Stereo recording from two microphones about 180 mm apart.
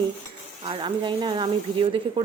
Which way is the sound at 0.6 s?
30° right (ahead or behind).